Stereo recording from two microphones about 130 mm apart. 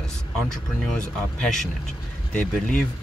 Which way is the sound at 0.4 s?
5° left (ahead or behind).